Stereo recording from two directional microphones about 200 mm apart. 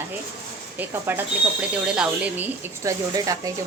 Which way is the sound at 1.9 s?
10° right (ahead or behind).